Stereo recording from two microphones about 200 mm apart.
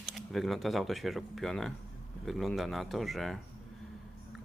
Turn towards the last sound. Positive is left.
turn(degrees=0)  # may be behind; listen again after turning